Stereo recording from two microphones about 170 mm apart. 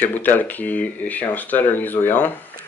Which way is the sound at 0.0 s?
10° left (ahead or behind).